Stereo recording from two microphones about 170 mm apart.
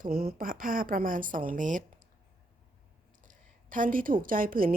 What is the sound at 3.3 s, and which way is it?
A woman's voice, 50° right (ahead or behind).